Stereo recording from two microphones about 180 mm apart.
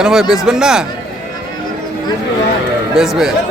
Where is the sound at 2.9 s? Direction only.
Centre (ahead or behind).